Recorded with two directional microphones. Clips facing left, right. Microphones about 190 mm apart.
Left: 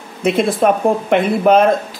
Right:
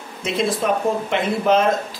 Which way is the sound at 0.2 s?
60° left (ahead or behind).